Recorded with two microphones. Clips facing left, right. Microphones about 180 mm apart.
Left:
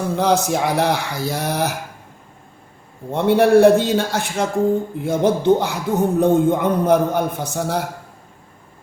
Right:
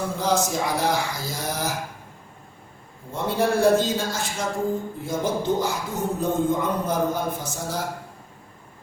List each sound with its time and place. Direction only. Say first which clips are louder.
0.2 s speech: left 6 dB; 65° left (ahead or behind)
3.1 s speech: left 9 dB; 65° left (ahead or behind)